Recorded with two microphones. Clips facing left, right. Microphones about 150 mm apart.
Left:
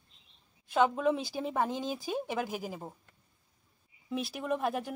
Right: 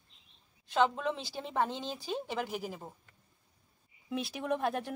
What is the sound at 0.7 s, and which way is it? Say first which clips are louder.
Speech: left 3 dB; 10° left (ahead or behind).